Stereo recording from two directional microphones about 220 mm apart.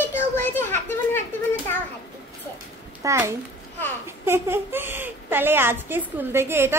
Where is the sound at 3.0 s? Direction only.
15° right (ahead or behind).